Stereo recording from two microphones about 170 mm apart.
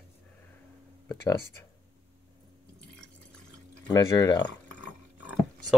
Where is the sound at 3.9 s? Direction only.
25° left (ahead or behind).